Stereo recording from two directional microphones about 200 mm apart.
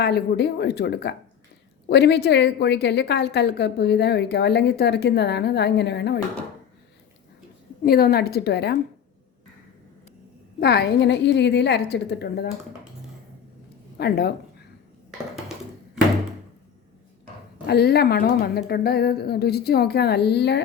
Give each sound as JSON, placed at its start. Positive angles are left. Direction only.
{"t": 0.0, "sound": "a woman's voice", "side_deg": 55}
{"t": 7.9, "sound": "speech", "side_deg": 50}
{"t": 10.6, "sound": "a woman's voice", "side_deg": 55}
{"t": 14.0, "sound": "speech", "side_deg": 55}
{"t": 17.7, "sound": "speech", "side_deg": 55}